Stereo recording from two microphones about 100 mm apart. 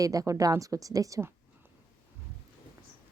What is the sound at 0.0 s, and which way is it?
Speech, 35° right (ahead or behind).